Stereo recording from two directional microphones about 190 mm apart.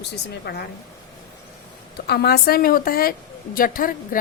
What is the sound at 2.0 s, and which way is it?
A woman's voice, 60° left (ahead or behind).